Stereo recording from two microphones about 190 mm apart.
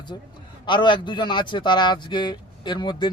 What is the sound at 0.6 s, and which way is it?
A man's voice, 25° left (ahead or behind).